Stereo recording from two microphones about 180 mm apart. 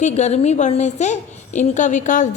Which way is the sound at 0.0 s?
40° left (ahead or behind).